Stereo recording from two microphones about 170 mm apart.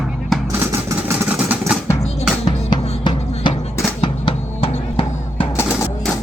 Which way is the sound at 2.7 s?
25° left (ahead or behind).